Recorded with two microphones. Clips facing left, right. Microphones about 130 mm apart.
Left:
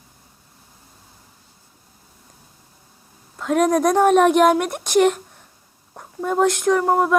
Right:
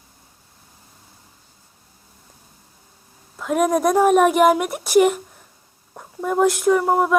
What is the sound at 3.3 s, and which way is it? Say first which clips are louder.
A woman's voice: left 1 dB; 5° right (ahead or behind).